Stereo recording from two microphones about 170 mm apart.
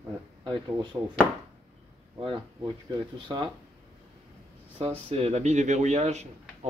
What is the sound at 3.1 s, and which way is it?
Speech, 30° right (ahead or behind).